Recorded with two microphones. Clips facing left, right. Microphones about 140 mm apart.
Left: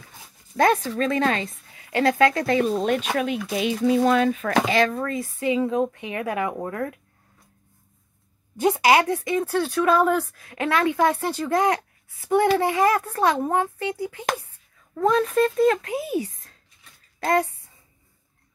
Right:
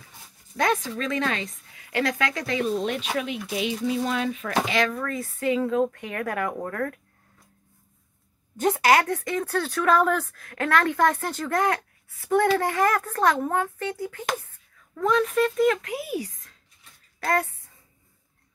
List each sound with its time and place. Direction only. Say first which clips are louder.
0.6 s a woman's voice: left 5 dB; 35° left (ahead or behind); by 7.0 s 15° left (ahead or behind)
8.5 s speech: left 2 dB; 15° left (ahead or behind)
15.0 s a woman's voice: left 2 dB; 35° left (ahead or behind)